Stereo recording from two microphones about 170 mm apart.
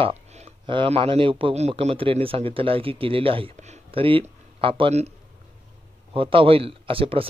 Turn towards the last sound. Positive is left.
turn(degrees=-30)  # may be behind; listen again after turning